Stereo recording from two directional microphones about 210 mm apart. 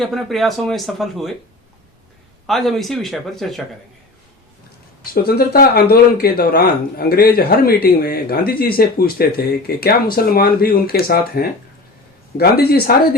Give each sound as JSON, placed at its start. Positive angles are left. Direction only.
{"t": 0.0, "sound": "speech", "side_deg": 0}
{"t": 2.5, "sound": "speech", "side_deg": 0}
{"t": 5.1, "sound": "speech", "side_deg": 50}